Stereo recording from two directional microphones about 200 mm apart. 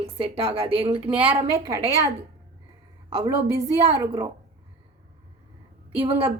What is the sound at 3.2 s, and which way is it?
Speech, 15° right (ahead or behind).